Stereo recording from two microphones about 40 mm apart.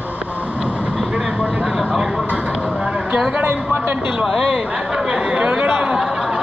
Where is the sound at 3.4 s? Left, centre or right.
Right.